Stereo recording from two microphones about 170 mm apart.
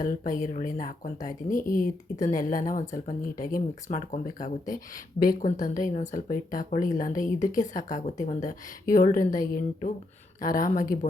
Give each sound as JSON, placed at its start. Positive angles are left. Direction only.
{"t": 0.0, "sound": "a woman's voice", "side_deg": 50}